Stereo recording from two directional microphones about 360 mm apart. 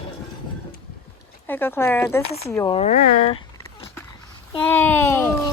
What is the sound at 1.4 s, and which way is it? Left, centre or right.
Speech, centre.